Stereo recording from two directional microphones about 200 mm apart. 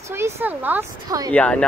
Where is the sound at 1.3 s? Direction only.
5° left (ahead or behind).